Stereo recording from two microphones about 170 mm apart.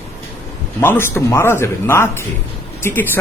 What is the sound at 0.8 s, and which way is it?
A man's voice, 15° left (ahead or behind).